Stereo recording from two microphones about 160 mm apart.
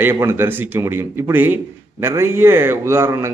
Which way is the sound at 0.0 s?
15° right (ahead or behind).